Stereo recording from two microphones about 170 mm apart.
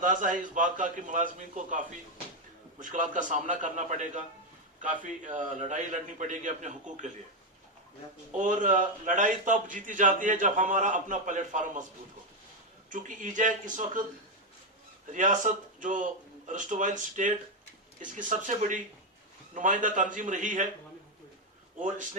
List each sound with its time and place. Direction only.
0.0 s a man's voice: 50° right (ahead or behind)
8.4 s a man's voice: 50° right (ahead or behind)
12.9 s a man's voice: 50° right (ahead or behind)
15.0 s a man's voice: 50° right (ahead or behind)
21.8 s speech: 50° right (ahead or behind)